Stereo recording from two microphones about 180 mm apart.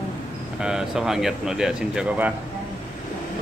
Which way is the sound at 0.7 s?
5° right (ahead or behind).